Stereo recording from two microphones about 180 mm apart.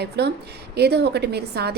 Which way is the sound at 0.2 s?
70° right (ahead or behind).